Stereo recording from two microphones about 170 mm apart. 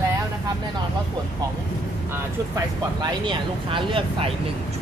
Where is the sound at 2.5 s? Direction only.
25° right (ahead or behind).